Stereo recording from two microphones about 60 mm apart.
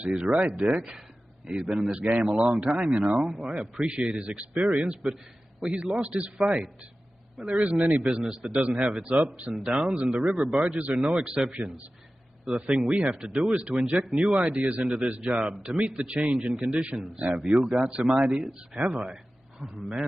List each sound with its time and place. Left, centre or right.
0.1 s a man's voice: centre
1.7 s a man's voice: centre
2.0 s a man's voice: right
12.4 s a man's voice: centre